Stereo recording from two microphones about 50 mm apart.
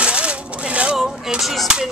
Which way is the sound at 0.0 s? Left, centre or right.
Right.